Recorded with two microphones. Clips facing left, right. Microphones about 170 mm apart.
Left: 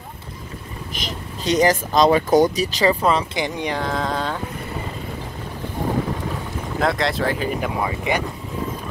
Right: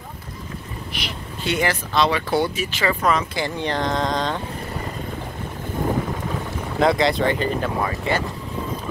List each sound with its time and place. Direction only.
1.4 s speech: 40° left (ahead or behind)
3.3 s speech: 15° left (ahead or behind)
6.8 s speech: centre (ahead or behind)
7.8 s speech: 15° left (ahead or behind)